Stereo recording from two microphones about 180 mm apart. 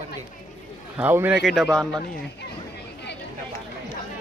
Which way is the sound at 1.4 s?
Centre (ahead or behind).